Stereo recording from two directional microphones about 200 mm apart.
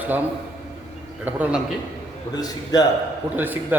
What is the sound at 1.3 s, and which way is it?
Speech, 10° right (ahead or behind).